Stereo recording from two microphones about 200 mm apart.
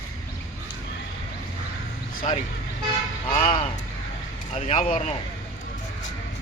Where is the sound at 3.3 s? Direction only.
30° left (ahead or behind).